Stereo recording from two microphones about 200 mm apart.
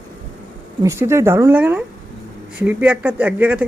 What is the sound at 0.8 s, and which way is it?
Speech, 15° right (ahead or behind).